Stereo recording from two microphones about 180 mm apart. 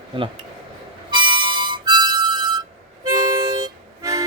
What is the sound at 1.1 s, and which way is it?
Harmonica, 25° right (ahead or behind).